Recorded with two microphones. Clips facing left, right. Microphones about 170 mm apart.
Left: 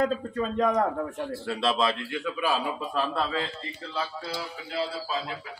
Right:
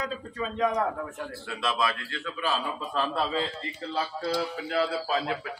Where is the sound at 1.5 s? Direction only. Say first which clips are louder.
Left 3 dB; 30° left (ahead or behind).